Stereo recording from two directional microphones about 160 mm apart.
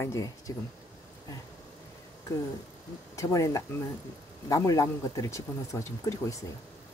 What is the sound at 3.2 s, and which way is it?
Speech, 20° left (ahead or behind).